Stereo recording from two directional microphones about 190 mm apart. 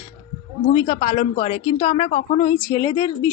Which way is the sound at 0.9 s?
40° left (ahead or behind).